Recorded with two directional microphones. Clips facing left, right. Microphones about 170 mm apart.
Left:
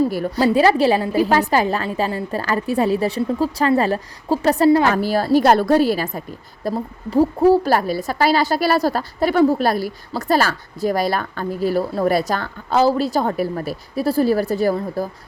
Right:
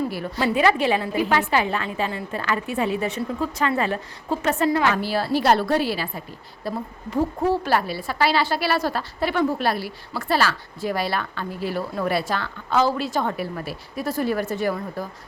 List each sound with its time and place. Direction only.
0.0 s a woman's voice: 40° left (ahead or behind)